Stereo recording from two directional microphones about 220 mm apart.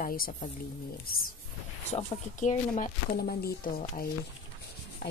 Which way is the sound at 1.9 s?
35° left (ahead or behind).